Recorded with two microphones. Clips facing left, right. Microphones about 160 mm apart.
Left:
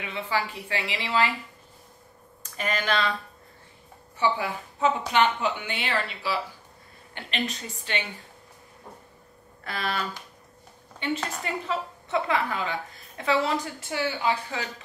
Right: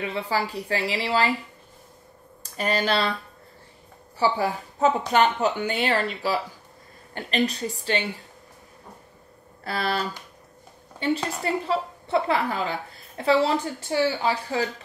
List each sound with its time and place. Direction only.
0.0 s speech: 35° right (ahead or behind)
2.4 s speech: 35° right (ahead or behind)
4.2 s speech: 35° right (ahead or behind)
9.7 s speech: 35° right (ahead or behind)
11.4 s speech: 35° right (ahead or behind)